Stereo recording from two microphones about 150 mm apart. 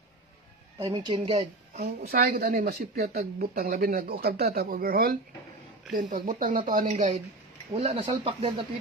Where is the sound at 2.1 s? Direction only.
75° right (ahead or behind).